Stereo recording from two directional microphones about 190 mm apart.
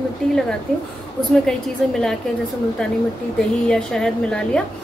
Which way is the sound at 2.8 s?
Centre (ahead or behind).